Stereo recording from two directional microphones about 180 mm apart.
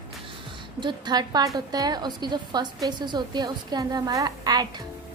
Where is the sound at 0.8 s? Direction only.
25° right (ahead or behind).